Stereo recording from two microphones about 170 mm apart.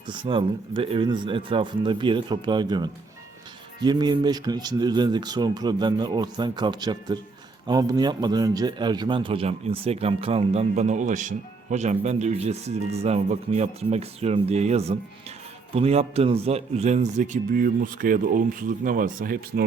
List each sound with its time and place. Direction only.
0.1 s a man's voice: 30° right (ahead or behind); by 19.6 s 55° right (ahead or behind)